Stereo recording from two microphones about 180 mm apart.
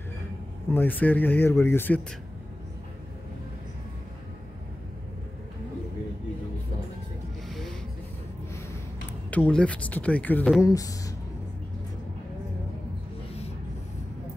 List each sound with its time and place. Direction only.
0.7 s speech: 10° left (ahead or behind)
9.3 s speech: 5° left (ahead or behind)
10.6 s speech: 20° left (ahead or behind)